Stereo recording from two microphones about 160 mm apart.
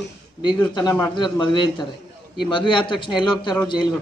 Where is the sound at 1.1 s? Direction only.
30° left (ahead or behind).